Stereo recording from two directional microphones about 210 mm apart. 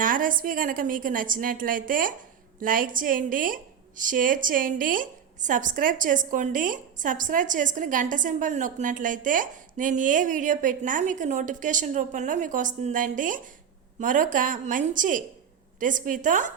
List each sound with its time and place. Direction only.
0.0 s a woman's voice: 40° right (ahead or behind)